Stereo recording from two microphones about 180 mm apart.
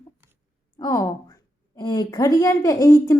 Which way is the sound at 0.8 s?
20° left (ahead or behind).